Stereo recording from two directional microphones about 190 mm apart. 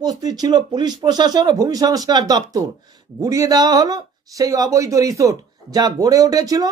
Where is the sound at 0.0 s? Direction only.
20° right (ahead or behind).